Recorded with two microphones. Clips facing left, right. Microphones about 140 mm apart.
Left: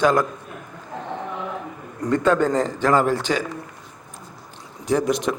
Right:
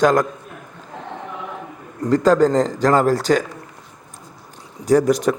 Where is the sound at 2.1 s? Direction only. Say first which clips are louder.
Right 4 dB; 35° right (ahead or behind).